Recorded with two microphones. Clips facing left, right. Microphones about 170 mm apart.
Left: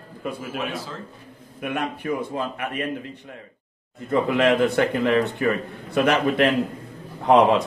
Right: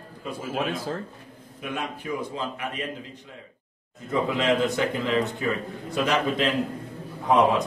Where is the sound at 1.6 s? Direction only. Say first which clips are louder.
Left 5 dB; 60° left (ahead or behind).